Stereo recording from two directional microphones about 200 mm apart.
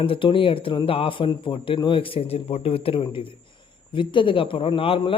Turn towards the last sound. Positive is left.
turn(degrees=25)  # may be behind; listen again after turning